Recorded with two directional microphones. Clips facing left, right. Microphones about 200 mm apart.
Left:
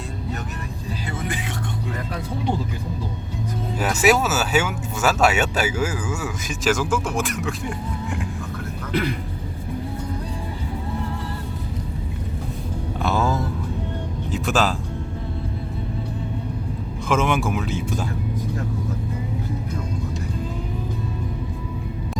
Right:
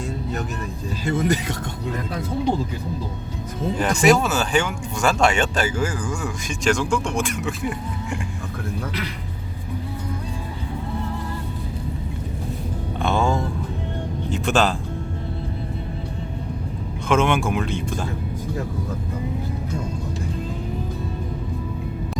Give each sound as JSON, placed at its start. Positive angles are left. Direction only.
{"t": 1.0, "sound": "speech", "side_deg": -40}
{"t": 3.8, "sound": "speech", "side_deg": 5}
{"t": 8.9, "sound": "speech", "side_deg": 50}
{"t": 13.0, "sound": "music", "side_deg": 0}
{"t": 14.3, "sound": "speech", "side_deg": 0}
{"t": 17.1, "sound": "speech", "side_deg": 0}